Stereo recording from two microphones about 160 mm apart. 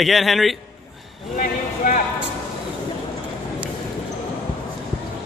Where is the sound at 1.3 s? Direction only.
55° left (ahead or behind).